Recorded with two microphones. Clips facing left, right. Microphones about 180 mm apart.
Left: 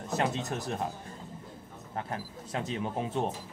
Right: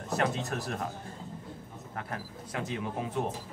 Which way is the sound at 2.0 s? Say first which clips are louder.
Left 3 dB; 25° left (ahead or behind).